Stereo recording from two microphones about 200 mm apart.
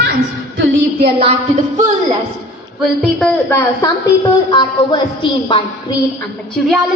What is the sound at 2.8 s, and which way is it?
Speech, centre (ahead or behind).